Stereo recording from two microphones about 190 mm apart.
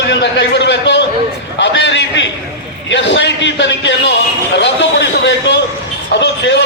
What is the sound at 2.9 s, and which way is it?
Music, 70° left (ahead or behind).